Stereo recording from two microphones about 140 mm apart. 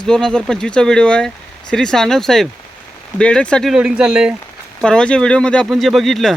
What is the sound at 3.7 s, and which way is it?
Speech, 5° right (ahead or behind).